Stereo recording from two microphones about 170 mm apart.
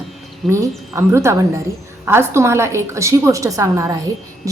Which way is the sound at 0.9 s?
15° right (ahead or behind).